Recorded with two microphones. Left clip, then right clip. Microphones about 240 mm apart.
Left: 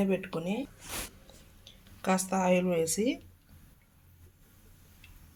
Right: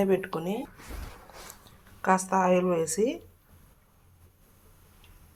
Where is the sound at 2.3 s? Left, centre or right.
Centre.